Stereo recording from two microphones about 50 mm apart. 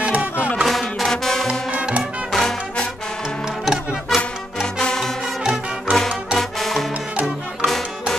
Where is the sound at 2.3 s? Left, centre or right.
Centre.